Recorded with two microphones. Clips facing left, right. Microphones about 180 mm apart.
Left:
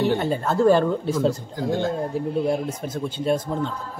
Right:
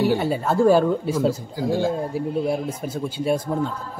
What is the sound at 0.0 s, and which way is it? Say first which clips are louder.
A man's voice: right 1 dB; 10° right (ahead or behind).